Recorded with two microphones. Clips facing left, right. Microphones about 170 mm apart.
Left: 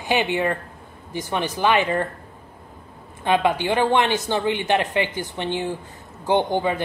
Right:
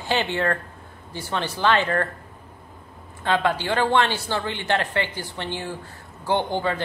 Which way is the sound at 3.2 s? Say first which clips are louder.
Left 3 dB; 15° left (ahead or behind).